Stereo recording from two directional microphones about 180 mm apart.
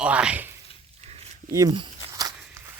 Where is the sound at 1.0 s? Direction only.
35° right (ahead or behind).